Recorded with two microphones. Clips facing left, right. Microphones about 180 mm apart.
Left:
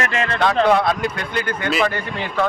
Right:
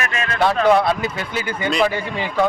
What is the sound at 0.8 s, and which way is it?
Speech, 5° right (ahead or behind).